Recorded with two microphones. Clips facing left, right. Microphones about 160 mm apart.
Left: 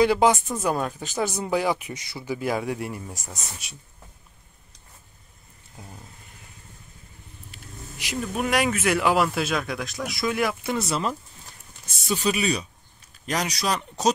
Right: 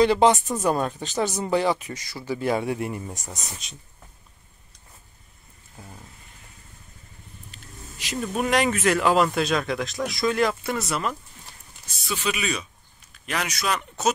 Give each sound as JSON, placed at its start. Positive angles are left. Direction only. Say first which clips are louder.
{"t": 0.0, "sound": "speech", "louder": "right 1 dB", "side_deg": 5}
{"t": 7.5, "sound": "speech", "louder": "left 4 dB", "side_deg": 10}
{"t": 10.9, "sound": "speech", "louder": "left 1 dB", "side_deg": 25}
{"t": 12.1, "sound": "speech", "louder": "left 4 dB", "side_deg": 35}